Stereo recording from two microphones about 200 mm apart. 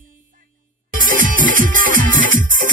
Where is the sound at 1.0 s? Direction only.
45° right (ahead or behind).